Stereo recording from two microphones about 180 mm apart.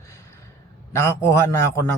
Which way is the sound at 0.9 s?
15° left (ahead or behind).